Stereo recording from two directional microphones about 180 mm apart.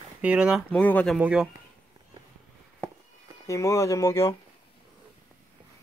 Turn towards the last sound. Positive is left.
turn(degrees=15)  # may be behind; listen again after turning